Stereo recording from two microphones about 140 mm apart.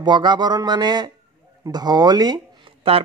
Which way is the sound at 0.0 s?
30° right (ahead or behind).